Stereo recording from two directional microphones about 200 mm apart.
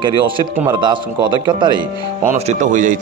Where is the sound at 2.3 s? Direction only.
40° right (ahead or behind).